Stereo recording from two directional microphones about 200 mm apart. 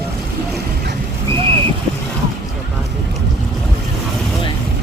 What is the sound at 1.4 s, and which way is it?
Vehicle, 25° right (ahead or behind).